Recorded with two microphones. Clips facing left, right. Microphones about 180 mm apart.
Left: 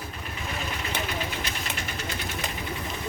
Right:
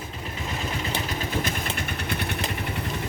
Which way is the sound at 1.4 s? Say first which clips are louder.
Right 4 dB; 55° right (ahead or behind).